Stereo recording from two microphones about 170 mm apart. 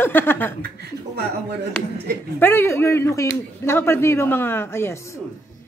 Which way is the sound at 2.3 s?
15° left (ahead or behind).